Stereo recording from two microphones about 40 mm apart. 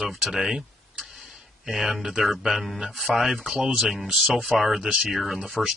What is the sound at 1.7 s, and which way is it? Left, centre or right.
Speech, centre.